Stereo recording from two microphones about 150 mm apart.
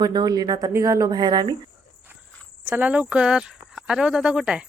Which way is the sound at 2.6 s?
10° right (ahead or behind).